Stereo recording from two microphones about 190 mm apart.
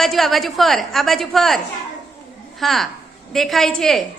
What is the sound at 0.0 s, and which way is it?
A woman's voice, centre (ahead or behind).